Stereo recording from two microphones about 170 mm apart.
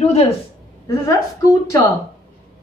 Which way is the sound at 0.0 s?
40° left (ahead or behind).